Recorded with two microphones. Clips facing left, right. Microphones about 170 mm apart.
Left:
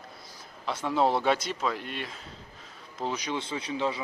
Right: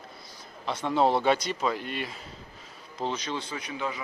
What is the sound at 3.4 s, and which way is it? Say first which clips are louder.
Speech: left 3 dB; 25° left (ahead or behind).